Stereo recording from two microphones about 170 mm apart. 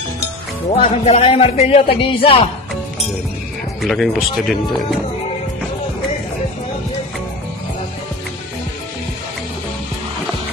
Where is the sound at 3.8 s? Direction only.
Centre (ahead or behind).